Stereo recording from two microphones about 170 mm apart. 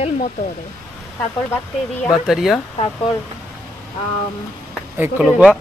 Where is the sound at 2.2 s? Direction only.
Centre (ahead or behind).